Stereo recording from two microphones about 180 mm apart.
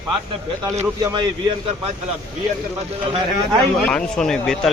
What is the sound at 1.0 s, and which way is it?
Speech, 25° right (ahead or behind).